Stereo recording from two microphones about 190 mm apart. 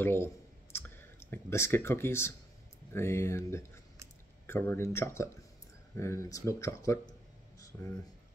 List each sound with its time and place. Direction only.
0.0 s speech: 10° left (ahead or behind)